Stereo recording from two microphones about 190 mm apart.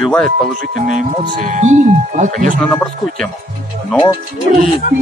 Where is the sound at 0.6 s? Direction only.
40° right (ahead or behind).